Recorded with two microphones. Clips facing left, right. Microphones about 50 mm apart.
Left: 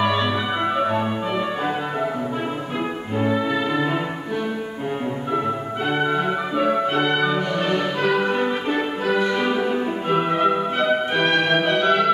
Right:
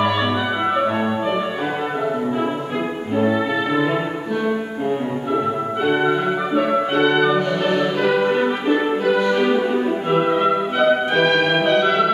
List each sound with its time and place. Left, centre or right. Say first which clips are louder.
0.0 s music: right 2 dB; centre
3.2 s music: right 2 dB; centre
5.9 s music: right 2 dB; centre
9.0 s music: even; centre